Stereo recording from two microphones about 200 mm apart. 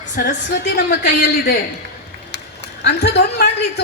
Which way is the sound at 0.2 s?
55° left (ahead or behind).